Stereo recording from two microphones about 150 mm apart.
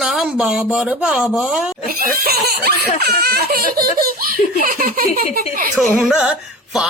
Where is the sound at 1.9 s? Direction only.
80° right.